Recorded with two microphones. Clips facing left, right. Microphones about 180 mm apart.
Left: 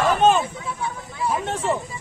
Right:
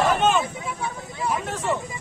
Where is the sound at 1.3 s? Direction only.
30° left (ahead or behind).